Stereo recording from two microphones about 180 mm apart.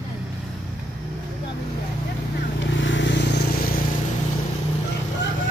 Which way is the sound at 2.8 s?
90° left.